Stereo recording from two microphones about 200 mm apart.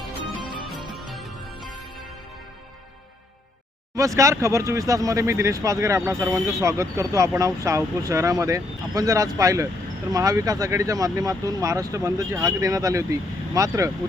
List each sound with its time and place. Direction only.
0.9 s music: centre (ahead or behind)
3.9 s speech: 15° right (ahead or behind)